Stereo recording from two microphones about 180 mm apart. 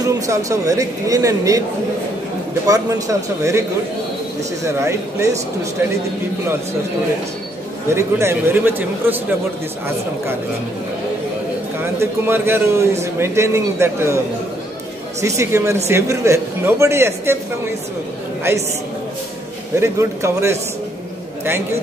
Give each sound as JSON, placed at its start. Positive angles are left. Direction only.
{"t": 0.0, "sound": "speech", "side_deg": -20}
{"t": 2.6, "sound": "a man's voice", "side_deg": -20}
{"t": 4.8, "sound": "a man's voice", "side_deg": -15}
{"t": 7.9, "sound": "a man's voice", "side_deg": -15}
{"t": 11.8, "sound": "a man's voice", "side_deg": -10}
{"t": 15.2, "sound": "a man's voice", "side_deg": -15}
{"t": 18.5, "sound": "a man's voice", "side_deg": -15}
{"t": 19.7, "sound": "a man's voice", "side_deg": -15}